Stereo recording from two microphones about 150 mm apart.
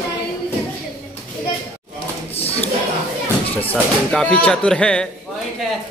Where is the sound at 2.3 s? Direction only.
40° left (ahead or behind).